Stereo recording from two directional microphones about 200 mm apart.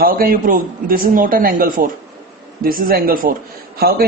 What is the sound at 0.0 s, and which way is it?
A man's voice, 45° right (ahead or behind).